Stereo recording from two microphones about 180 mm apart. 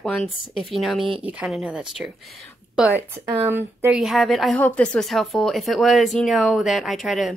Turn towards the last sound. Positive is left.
turn(degrees=0)  # may be behind; listen again after turning